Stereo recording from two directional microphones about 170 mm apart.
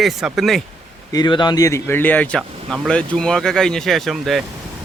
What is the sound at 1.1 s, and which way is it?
Speech, 25° left (ahead or behind).